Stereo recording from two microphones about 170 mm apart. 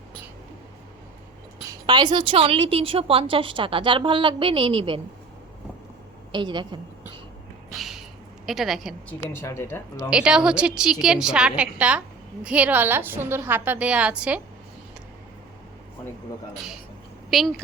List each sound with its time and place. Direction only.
1.9 s a woman's voice: 25° right (ahead or behind)
6.3 s a woman's voice: 25° right (ahead or behind)
7.7 s a sound: centre (ahead or behind)
8.4 s a woman's voice: centre (ahead or behind)
9.0 s speech: 15° left (ahead or behind)
10.1 s a woman's voice: 5° right (ahead or behind)
17.3 s a woman's voice: centre (ahead or behind)